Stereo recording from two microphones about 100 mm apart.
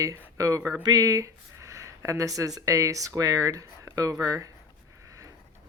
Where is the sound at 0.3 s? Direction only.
35° right (ahead or behind).